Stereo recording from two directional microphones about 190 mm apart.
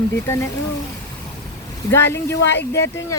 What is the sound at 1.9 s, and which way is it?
Speech, 15° left (ahead or behind).